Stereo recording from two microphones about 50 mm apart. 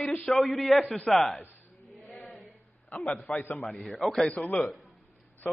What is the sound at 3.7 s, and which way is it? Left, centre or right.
Speech, centre.